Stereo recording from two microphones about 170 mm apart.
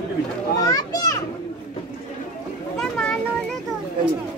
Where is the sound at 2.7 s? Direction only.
5° left (ahead or behind).